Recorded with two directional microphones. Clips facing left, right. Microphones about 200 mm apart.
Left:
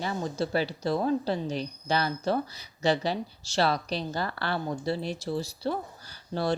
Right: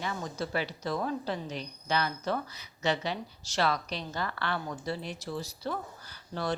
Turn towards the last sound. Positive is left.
turn(degrees=30)  # may be behind; listen again after turning